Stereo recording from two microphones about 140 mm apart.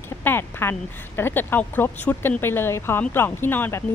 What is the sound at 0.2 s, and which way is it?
Speech, 15° left (ahead or behind).